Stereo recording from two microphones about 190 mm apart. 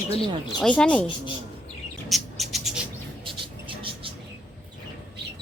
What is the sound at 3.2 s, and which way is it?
Vehicle, 25° right (ahead or behind).